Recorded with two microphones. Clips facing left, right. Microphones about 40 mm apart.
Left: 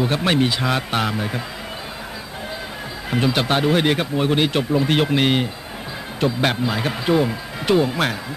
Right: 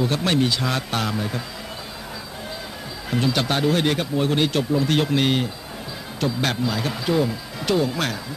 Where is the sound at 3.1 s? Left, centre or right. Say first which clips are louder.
Left 3 dB; left.